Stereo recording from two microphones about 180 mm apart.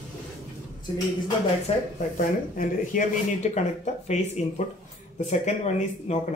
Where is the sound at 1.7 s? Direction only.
35° left (ahead or behind).